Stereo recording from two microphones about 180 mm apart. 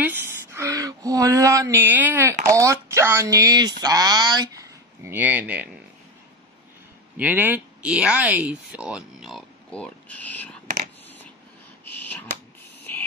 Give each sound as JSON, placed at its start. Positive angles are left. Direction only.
{"t": 0.0, "sound": "speech", "side_deg": -10}
{"t": 7.2, "sound": "speech", "side_deg": -10}
{"t": 11.8, "sound": "a sound", "side_deg": 10}